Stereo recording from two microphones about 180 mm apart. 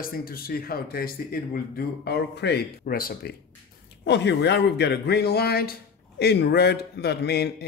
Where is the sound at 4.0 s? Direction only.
75° left (ahead or behind).